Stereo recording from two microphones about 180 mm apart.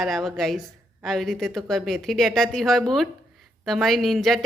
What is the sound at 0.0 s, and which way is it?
Speech, centre (ahead or behind).